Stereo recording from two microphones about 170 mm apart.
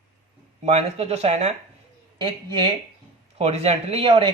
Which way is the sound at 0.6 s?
40° right (ahead or behind).